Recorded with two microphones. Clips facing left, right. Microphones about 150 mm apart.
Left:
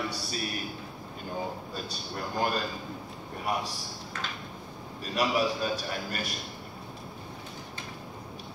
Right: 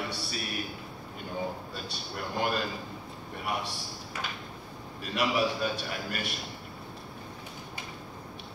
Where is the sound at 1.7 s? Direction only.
40° left (ahead or behind).